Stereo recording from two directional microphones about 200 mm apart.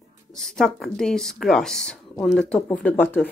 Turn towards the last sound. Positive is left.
turn(degrees=10)  # may be behind; listen again after turning